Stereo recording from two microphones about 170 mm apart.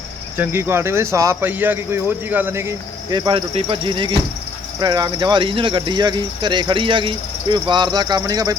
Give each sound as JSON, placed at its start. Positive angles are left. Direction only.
{"t": 0.3, "sound": "speech", "side_deg": -15}